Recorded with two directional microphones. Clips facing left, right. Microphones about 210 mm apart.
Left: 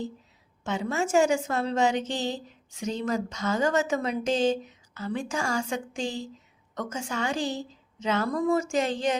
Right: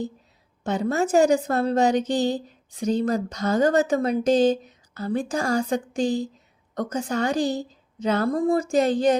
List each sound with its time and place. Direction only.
0.6 s speech: 35° right (ahead or behind)